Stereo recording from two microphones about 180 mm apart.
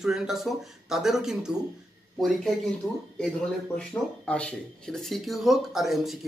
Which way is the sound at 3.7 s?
5° left (ahead or behind).